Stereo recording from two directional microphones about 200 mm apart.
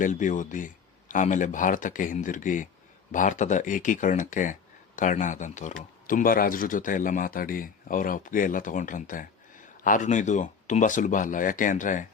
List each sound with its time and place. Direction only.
0.0 s speech: 40° left (ahead or behind)